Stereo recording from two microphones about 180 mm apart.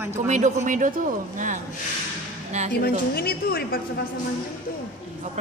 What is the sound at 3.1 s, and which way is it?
Speech, 60° left (ahead or behind).